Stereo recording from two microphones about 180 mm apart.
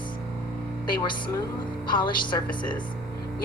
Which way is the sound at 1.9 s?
25° left (ahead or behind).